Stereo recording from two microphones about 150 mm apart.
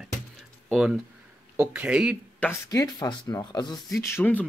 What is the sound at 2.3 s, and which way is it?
Speech, 10° left (ahead or behind).